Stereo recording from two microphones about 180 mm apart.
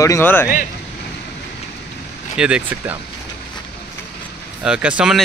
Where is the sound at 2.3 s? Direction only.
5° right (ahead or behind).